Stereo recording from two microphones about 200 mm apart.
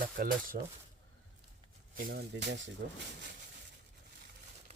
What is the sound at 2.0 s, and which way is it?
Speech, 50° right (ahead or behind).